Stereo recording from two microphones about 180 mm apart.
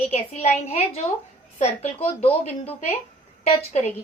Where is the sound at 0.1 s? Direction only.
40° left (ahead or behind).